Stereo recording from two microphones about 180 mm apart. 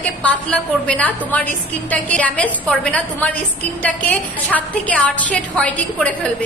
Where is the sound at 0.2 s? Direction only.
5° left (ahead or behind).